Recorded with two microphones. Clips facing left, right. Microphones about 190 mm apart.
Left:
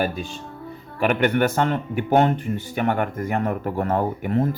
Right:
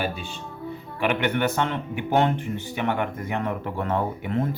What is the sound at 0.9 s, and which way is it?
Speech, 45° left (ahead or behind).